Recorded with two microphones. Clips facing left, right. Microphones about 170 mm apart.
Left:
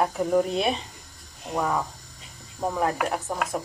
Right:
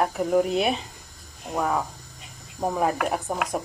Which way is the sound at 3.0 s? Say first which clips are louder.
Right 1 dB; 15° right (ahead or behind).